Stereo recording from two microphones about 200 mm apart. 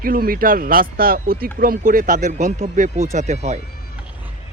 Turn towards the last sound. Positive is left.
turn(degrees=-35)  # may be behind; listen again after turning